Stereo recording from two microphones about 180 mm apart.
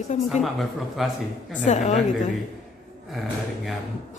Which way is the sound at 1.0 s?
Centre (ahead or behind).